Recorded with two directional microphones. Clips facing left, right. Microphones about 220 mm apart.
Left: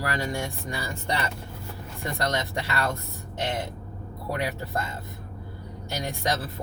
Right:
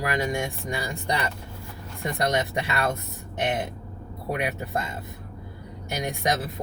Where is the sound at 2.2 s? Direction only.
15° right (ahead or behind).